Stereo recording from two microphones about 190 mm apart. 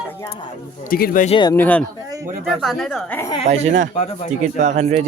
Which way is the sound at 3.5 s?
35° right (ahead or behind).